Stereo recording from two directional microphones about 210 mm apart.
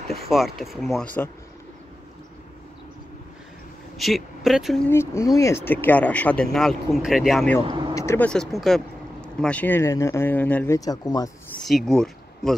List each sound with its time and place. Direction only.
0.3 s speech: centre (ahead or behind)
4.0 s speech: centre (ahead or behind)
4.8 s speech: 10° left (ahead or behind)
7.6 s speech: 25° right (ahead or behind)
7.9 s speech: 15° left (ahead or behind)
11.6 s speech: centre (ahead or behind)